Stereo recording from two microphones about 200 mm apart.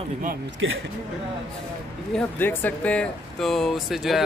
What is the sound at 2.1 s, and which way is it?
Speech, 10° left (ahead or behind).